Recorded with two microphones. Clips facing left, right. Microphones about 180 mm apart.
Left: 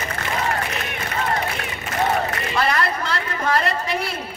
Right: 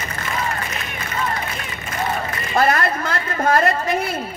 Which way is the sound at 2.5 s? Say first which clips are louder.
Right 5 dB; 50° right (ahead or behind).